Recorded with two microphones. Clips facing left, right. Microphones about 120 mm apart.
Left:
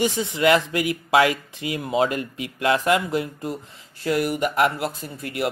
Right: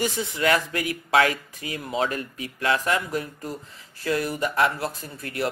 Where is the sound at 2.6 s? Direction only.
30° left (ahead or behind).